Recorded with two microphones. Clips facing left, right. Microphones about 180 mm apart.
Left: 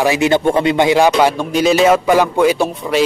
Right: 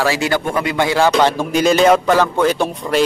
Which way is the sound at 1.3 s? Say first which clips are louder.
Left 1 dB; centre (ahead or behind).